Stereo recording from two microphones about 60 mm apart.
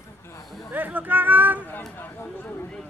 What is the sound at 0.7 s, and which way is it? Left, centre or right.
Speech, right.